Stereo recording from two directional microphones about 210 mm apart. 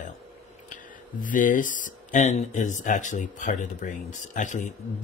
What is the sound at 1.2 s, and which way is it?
Speech, 40° left (ahead or behind).